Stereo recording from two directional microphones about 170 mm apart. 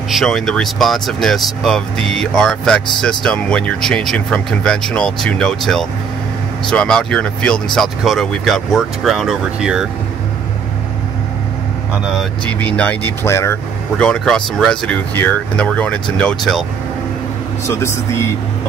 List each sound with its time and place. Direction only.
0.1 s speech: centre (ahead or behind)
11.9 s speech: centre (ahead or behind)
12.5 s speech: 10° left (ahead or behind)
14.0 s speech: 5° left (ahead or behind)
17.6 s speech: 15° left (ahead or behind)